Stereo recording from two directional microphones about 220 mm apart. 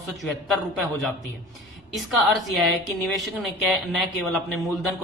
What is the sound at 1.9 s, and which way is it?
A woman's voice, centre (ahead or behind).